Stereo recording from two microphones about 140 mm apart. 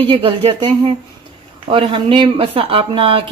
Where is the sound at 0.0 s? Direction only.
35° right (ahead or behind).